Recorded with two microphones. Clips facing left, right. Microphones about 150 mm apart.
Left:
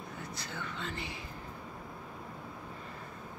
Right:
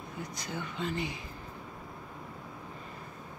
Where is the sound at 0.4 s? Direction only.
15° right (ahead or behind).